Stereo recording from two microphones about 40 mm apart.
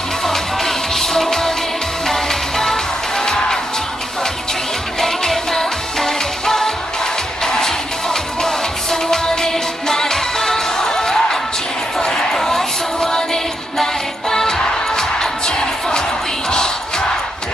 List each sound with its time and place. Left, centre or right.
0.2 s music: centre
5.0 s music of asia: centre
7.4 s music: centre
12.0 s a sound: centre
12.4 s music: centre
16.4 s crowd: centre